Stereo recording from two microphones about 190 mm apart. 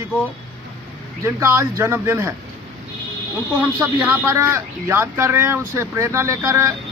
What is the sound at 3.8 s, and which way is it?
Speech, 15° right (ahead or behind).